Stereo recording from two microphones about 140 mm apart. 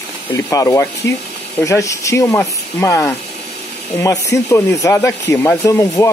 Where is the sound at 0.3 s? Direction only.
20° left (ahead or behind).